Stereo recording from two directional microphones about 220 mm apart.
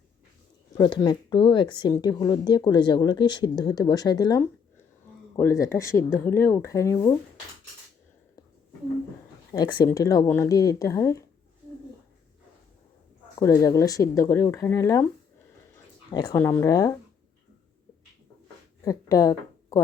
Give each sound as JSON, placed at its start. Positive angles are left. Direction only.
{"t": 0.7, "sound": "speech", "side_deg": 20}
{"t": 9.5, "sound": "speech", "side_deg": 20}
{"t": 13.4, "sound": "speech", "side_deg": 15}
{"t": 16.0, "sound": "speech", "side_deg": 15}
{"t": 18.9, "sound": "speech", "side_deg": 15}